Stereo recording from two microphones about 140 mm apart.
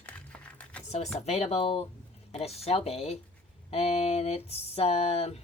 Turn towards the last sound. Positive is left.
turn(degrees=45)  # may be behind; listen again after turning